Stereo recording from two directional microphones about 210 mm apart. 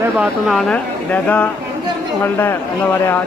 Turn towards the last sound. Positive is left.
turn(degrees=10)  # may be behind; listen again after turning